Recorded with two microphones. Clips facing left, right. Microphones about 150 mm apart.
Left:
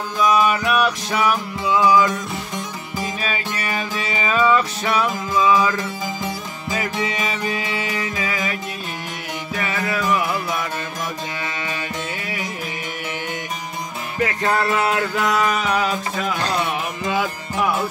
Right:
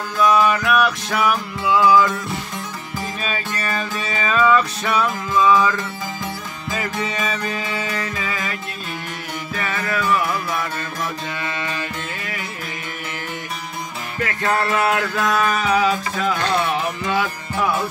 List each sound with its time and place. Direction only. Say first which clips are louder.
0.2 s music: right 1 dB; 10° left (ahead or behind)
0.8 s music: even; centre (ahead or behind)
1.6 s music: right 1 dB; 20° left (ahead or behind)
3.6 s music: even; 15° left (ahead or behind)
9.6 s music: even; 10° left (ahead or behind)
10.1 s music: even; 15° left (ahead or behind)
14.1 s music: left 1 dB; 25° left (ahead or behind)
15.1 s music: even; 15° left (ahead or behind)